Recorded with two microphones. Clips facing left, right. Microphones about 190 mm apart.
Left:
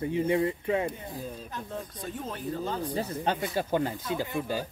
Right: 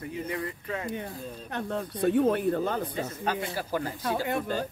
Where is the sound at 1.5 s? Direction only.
70° right (ahead or behind).